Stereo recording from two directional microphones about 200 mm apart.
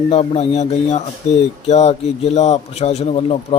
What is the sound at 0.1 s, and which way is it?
Speech, 30° left (ahead or behind).